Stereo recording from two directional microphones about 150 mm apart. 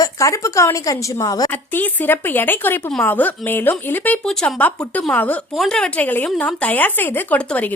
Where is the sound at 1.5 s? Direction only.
15° left (ahead or behind).